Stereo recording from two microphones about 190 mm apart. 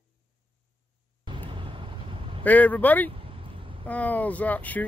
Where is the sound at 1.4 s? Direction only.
25° right (ahead or behind).